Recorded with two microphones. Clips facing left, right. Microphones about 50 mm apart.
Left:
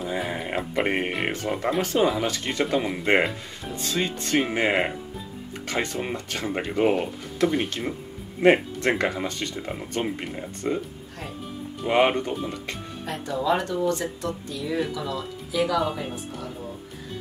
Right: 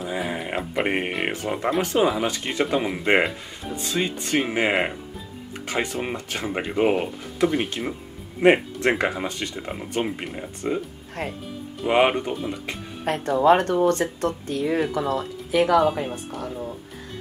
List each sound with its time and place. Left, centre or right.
0.0 s speech: centre
11.8 s speech: centre
13.0 s speech: right